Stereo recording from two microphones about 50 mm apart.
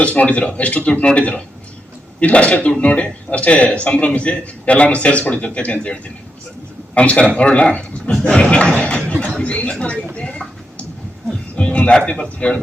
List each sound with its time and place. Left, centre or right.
0.0 s a man's voice: left
10.2 s a sound: left
11.9 s a man's voice: centre